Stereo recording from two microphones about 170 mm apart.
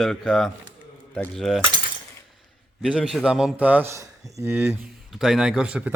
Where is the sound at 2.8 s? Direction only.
5° right (ahead or behind).